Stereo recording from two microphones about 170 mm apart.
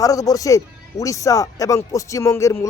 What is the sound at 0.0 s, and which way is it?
Speech, 20° left (ahead or behind).